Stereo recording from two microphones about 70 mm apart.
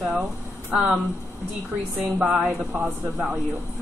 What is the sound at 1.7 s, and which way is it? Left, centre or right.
A woman's voice, centre.